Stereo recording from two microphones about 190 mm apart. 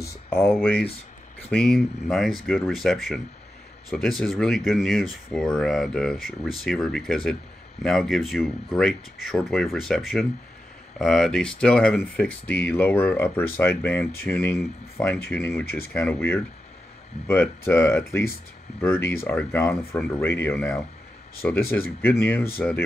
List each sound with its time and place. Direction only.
0.0 s speech: 15° left (ahead or behind)
15.6 s speech: 55° left (ahead or behind)
15.9 s speech: 10° left (ahead or behind)